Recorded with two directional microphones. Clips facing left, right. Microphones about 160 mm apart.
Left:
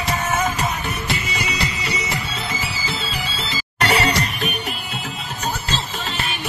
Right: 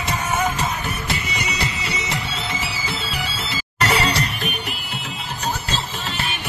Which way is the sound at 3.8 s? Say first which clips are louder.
Left 1 dB; 35° left (ahead or behind).